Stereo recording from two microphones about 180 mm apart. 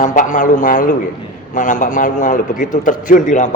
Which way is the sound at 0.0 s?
45° left (ahead or behind).